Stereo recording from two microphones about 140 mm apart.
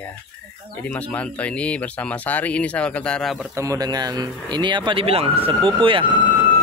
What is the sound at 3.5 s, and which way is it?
Speech, 25° right (ahead or behind).